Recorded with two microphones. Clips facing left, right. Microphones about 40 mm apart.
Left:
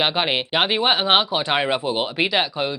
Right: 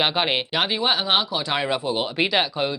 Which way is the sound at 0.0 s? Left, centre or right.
Centre.